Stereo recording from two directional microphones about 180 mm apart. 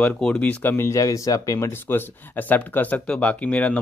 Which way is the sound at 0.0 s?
5° left (ahead or behind).